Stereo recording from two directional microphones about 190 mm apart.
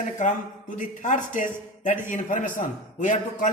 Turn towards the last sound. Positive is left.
turn(degrees=40)  # may be behind; listen again after turning